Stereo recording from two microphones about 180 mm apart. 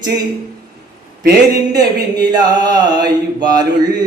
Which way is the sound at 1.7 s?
20° right (ahead or behind).